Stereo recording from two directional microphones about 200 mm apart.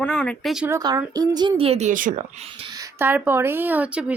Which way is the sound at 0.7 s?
15° right (ahead or behind).